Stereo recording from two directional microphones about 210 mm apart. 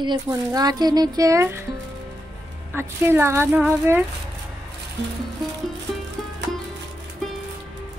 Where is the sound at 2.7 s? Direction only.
10° right (ahead or behind).